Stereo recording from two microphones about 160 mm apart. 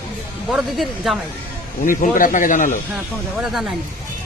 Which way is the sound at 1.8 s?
60° left (ahead or behind).